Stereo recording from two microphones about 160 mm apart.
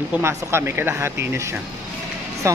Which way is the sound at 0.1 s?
15° right (ahead or behind).